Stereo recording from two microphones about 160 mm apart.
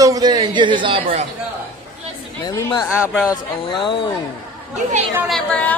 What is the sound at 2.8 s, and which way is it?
Speech, 10° right (ahead or behind).